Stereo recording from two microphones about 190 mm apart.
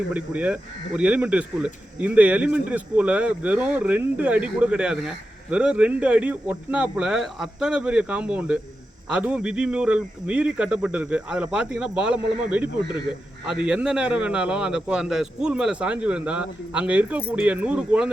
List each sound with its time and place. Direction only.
0.1 s a man's voice: 10° right (ahead or behind)